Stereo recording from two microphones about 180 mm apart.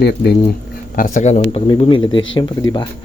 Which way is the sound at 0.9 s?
50° left (ahead or behind).